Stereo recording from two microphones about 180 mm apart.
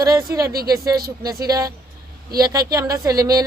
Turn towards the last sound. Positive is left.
turn(degrees=-20)  # may be behind; listen again after turning